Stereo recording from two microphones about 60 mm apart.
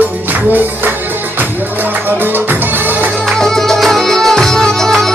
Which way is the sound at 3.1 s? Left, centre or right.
Centre.